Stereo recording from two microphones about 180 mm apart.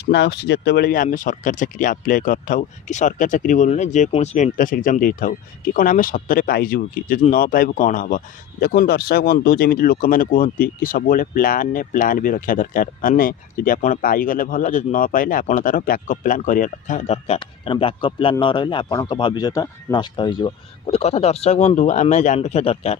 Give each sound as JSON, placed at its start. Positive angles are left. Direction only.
{"t": 0.0, "sound": "speech", "side_deg": 70}